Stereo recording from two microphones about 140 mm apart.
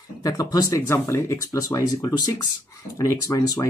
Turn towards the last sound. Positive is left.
turn(degrees=25)  # may be behind; listen again after turning